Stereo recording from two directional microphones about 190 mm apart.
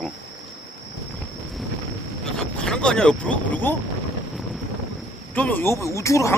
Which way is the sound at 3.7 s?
10° left (ahead or behind).